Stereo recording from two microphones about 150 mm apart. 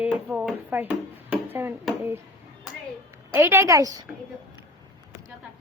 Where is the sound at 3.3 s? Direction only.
15° right (ahead or behind).